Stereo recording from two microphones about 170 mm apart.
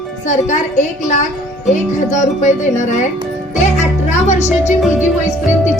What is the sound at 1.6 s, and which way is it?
Speech, 45° left (ahead or behind).